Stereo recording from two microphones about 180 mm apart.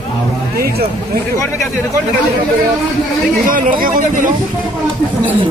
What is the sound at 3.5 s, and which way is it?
Speech, 50° right (ahead or behind).